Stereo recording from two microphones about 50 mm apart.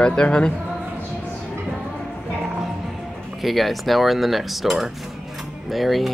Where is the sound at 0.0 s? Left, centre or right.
Centre.